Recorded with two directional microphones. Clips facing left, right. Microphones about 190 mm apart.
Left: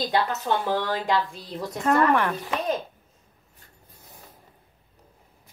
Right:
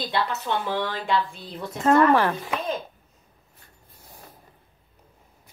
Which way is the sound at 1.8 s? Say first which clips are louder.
Right 3 dB; 35° right (ahead or behind).